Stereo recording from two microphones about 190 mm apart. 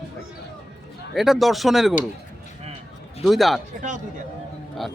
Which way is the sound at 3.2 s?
Centre (ahead or behind).